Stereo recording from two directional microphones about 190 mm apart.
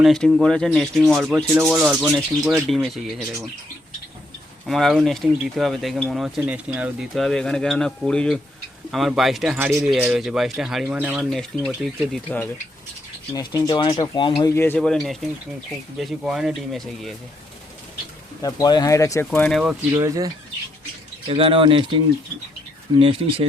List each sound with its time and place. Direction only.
0.0 s speech: centre (ahead or behind)
4.6 s speech: centre (ahead or behind)
13.3 s speech: 20° left (ahead or behind)
14.5 s speech: 10° left (ahead or behind)
18.4 s speech: 20° left (ahead or behind); by 19.7 s centre (ahead or behind)
19.9 s speech: 15° right (ahead or behind)